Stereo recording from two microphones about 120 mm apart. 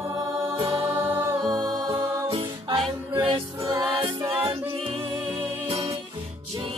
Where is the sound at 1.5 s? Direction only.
45° right (ahead or behind).